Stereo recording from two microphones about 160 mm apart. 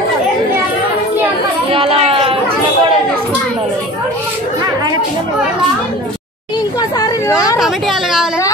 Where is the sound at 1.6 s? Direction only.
35° right (ahead or behind).